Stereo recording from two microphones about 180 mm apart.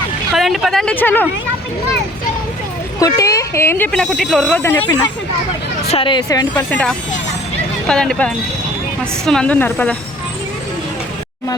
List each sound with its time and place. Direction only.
0.3 s speech: centre (ahead or behind)
3.0 s speech: 20° left (ahead or behind); by 4.6 s centre (ahead or behind)
4.6 s speech: 15° left (ahead or behind)
5.9 s speech: 30° left (ahead or behind); by 9.9 s 10° left (ahead or behind)